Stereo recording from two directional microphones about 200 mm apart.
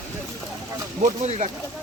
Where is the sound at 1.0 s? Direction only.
40° right (ahead or behind).